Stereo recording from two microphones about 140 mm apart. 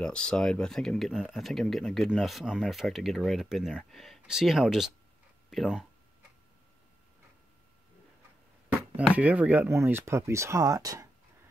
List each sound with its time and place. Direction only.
0.0 s speech: 5° left (ahead or behind)
9.1 s speech: 10° right (ahead or behind)